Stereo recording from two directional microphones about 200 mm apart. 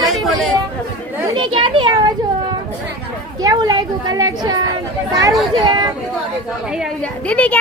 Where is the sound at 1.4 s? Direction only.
25° right (ahead or behind).